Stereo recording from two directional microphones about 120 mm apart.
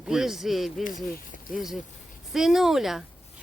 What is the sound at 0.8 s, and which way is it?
Speech, 90° left.